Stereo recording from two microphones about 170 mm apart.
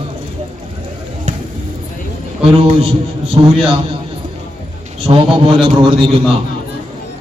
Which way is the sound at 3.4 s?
25° right (ahead or behind).